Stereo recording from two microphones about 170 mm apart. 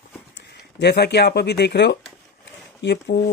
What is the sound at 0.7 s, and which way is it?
Speech, 75° left (ahead or behind).